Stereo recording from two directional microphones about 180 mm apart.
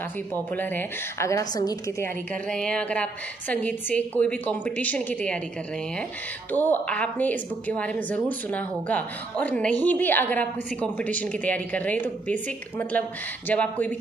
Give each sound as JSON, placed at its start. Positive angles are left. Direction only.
{"t": 0.3, "sound": "a woman's voice", "side_deg": 10}
{"t": 2.5, "sound": "a woman's voice", "side_deg": 5}
{"t": 6.5, "sound": "a woman's voice", "side_deg": 10}